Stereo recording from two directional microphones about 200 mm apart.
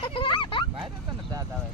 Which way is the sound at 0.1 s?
25° left (ahead or behind).